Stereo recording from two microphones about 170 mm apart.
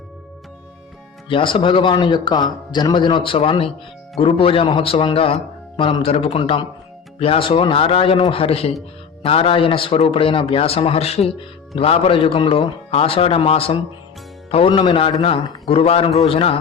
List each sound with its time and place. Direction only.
1.3 s a man's voice: 30° left (ahead or behind)